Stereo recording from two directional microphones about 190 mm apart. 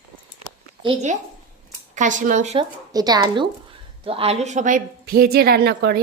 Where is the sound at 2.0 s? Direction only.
40° right (ahead or behind).